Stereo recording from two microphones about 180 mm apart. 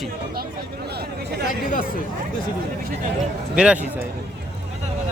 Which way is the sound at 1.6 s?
50° left (ahead or behind).